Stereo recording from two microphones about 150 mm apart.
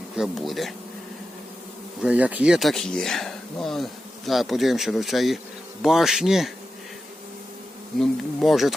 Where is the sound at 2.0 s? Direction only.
10° right (ahead or behind).